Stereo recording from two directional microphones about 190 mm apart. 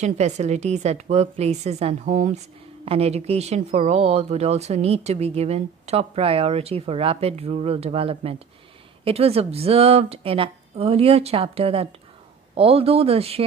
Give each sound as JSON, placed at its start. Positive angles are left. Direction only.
{"t": 0.0, "sound": "a woman's voice", "side_deg": -35}